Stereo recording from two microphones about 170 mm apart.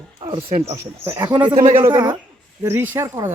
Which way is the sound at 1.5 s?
30° right (ahead or behind).